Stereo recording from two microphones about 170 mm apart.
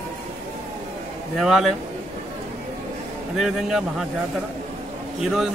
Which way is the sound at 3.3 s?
Centre (ahead or behind).